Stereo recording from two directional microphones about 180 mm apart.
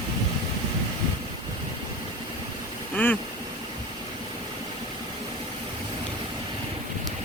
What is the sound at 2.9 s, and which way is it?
Speech, 10° left (ahead or behind).